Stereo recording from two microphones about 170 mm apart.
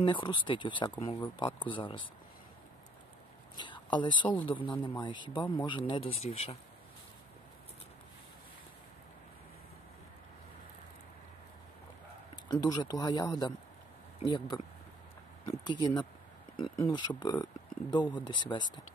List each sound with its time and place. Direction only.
0.0 s speech: 30° left (ahead or behind)
3.5 s speech: 25° left (ahead or behind)
12.4 s speech: 25° left (ahead or behind)